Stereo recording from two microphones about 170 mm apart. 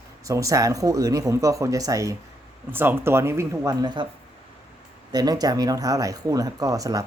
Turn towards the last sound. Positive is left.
turn(degrees=-20)  # may be behind; listen again after turning